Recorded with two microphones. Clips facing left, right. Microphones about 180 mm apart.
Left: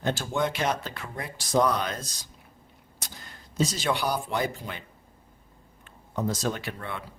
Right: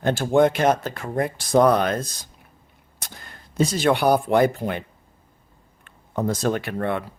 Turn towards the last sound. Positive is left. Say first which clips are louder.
# right 10 dB
turn(degrees=-60)  # may be behind; listen again after turning